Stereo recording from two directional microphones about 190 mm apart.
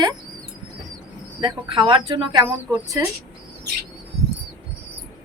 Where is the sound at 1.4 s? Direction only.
25° right (ahead or behind).